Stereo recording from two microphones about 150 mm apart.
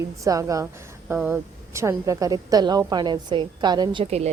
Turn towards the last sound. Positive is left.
turn(degrees=-45)  # may be behind; listen again after turning